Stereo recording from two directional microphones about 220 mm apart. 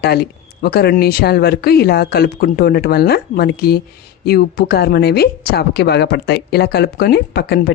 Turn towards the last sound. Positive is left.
turn(degrees=45)  # may be behind; listen again after turning